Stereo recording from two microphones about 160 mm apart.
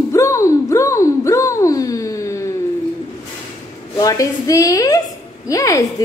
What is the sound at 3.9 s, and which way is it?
A woman's voice, 20° left (ahead or behind).